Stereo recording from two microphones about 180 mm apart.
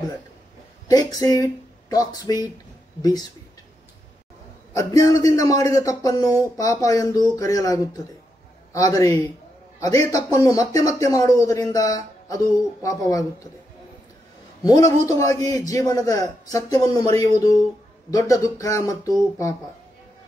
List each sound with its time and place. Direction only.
0.8 s speech: 20° left (ahead or behind)
4.7 s speech: 20° left (ahead or behind)
14.6 s speech: 20° left (ahead or behind)